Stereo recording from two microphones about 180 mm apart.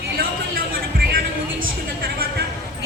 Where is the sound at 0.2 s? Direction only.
55° right (ahead or behind).